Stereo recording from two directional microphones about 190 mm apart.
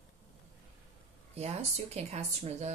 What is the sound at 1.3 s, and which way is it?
Speech, 35° right (ahead or behind).